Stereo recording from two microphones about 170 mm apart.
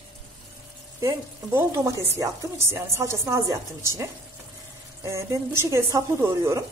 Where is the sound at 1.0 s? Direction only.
15° right (ahead or behind).